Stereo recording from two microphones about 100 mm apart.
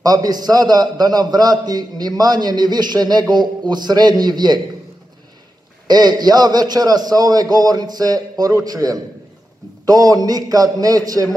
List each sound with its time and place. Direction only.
0.0 s a man's voice: 40° right (ahead or behind)
5.9 s a man's voice: 45° right (ahead or behind)